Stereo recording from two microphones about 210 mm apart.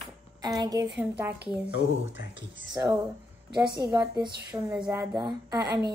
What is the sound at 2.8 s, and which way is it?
Speech, 15° right (ahead or behind).